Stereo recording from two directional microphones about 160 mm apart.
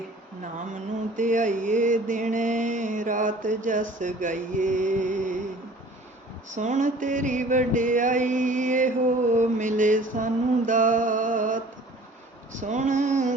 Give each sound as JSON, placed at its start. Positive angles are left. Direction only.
{"t": 0.7, "sound": "music", "side_deg": -50}
{"t": 6.5, "sound": "music", "side_deg": -50}
{"t": 10.7, "sound": "a sound", "side_deg": -55}
{"t": 12.5, "sound": "music", "side_deg": -50}